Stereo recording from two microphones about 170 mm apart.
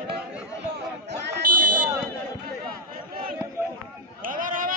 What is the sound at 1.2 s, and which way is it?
Buzzer, 55° right (ahead or behind).